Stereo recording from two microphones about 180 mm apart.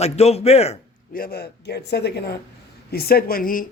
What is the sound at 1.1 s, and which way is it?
Speech, 55° left (ahead or behind).